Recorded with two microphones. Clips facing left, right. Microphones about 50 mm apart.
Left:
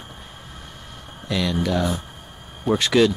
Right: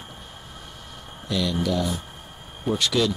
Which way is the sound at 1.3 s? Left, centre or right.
Left.